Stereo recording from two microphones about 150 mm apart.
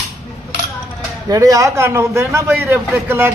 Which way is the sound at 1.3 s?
20° right (ahead or behind).